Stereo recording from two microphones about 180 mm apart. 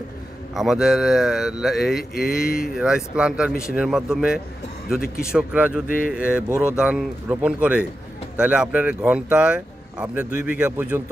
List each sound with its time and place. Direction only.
0.6 s speech: 5° right (ahead or behind)
5.9 s speech: 50° left (ahead or behind)
6.1 s speech: 5° right (ahead or behind)